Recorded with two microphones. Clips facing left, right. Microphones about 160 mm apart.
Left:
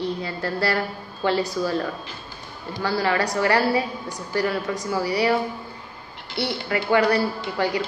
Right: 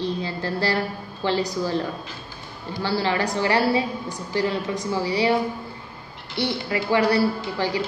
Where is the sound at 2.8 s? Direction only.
25° right (ahead or behind).